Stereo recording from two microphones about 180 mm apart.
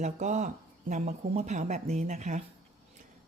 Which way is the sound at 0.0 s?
40° right (ahead or behind).